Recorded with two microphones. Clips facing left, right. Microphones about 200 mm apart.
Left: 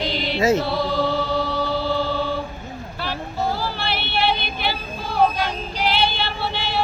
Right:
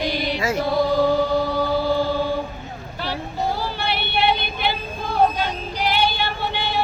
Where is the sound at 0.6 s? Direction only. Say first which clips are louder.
Right 3 dB; 15° right (ahead or behind).